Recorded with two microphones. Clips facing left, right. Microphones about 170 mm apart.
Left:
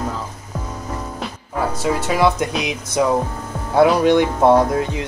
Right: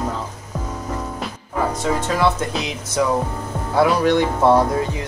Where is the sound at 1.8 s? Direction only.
10° left (ahead or behind).